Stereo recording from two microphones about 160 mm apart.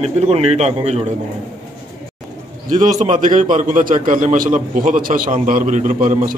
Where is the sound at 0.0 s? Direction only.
40° right (ahead or behind).